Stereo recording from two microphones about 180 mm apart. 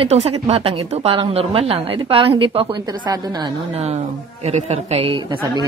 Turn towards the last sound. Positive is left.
turn(degrees=-30)  # may be behind; listen again after turning